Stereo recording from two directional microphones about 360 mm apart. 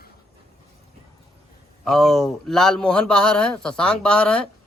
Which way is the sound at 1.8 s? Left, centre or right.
Centre.